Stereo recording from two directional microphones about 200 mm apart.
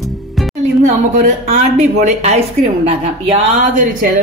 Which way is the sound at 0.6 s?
40° right (ahead or behind).